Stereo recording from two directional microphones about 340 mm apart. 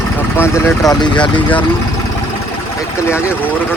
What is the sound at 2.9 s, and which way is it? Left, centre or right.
Speech, centre.